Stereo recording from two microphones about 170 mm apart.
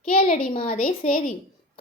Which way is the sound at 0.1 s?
55° left (ahead or behind).